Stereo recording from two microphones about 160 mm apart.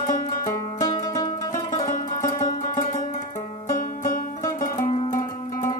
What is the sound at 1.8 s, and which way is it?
Music, 55° left (ahead or behind).